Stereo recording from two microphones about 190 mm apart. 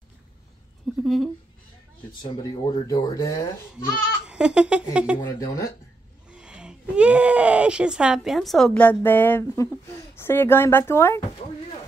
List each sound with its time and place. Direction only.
1.0 s speech: centre (ahead or behind)
2.2 s speech: 25° left (ahead or behind)
4.3 s a woman's voice: 5° right (ahead or behind)
5.2 s speech: 15° left (ahead or behind)
6.3 s speech: 5° right (ahead or behind); by 11.2 s 15° left (ahead or behind)